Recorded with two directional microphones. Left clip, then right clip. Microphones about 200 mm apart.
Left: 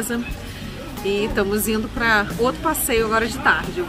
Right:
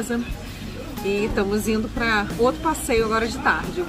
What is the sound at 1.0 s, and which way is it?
Speech, 5° right (ahead or behind).